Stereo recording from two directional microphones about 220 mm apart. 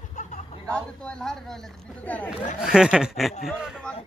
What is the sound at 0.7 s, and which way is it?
Speech, 5° left (ahead or behind).